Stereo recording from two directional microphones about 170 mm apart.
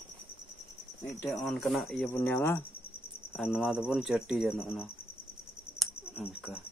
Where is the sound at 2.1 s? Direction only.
10° left (ahead or behind).